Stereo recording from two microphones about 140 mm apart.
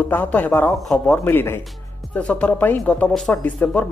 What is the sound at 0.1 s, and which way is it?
Speech, 10° left (ahead or behind).